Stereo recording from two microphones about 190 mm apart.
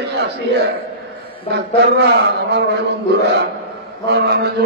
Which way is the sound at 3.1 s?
65° right (ahead or behind).